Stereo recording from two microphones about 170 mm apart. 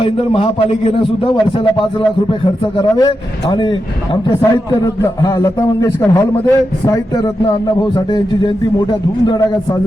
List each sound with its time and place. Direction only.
0.0 s a man's voice: 30° left (ahead or behind)